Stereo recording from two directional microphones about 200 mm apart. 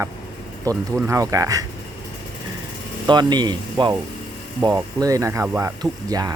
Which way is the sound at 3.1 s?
20° right (ahead or behind).